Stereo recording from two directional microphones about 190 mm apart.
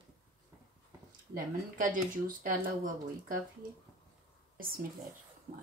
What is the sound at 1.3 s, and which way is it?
Speech, 45° right (ahead or behind).